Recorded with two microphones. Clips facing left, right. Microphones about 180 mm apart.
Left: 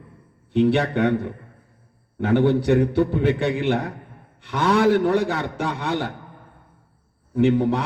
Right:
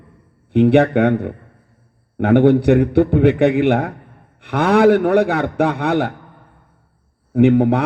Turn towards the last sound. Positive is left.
turn(degrees=-60)  # may be behind; listen again after turning